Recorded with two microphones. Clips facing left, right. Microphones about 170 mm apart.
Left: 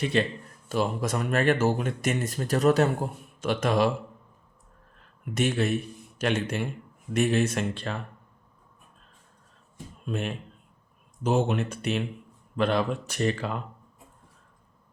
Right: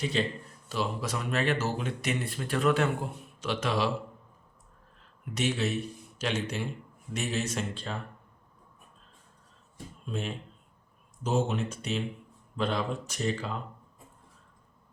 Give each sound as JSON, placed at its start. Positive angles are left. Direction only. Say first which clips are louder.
{"t": 0.0, "sound": "speech", "louder": "left 4 dB", "side_deg": 60}
{"t": 0.7, "sound": "speech", "louder": "left 5 dB", "side_deg": 50}
{"t": 5.3, "sound": "speech", "louder": "left 4 dB", "side_deg": 50}
{"t": 10.1, "sound": "speech", "louder": "left 4 dB", "side_deg": 65}